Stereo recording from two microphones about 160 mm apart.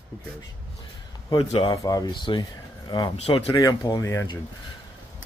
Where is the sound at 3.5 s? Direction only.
20° left (ahead or behind).